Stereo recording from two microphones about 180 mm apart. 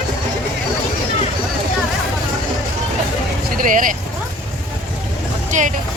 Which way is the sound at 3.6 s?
45° right (ahead or behind).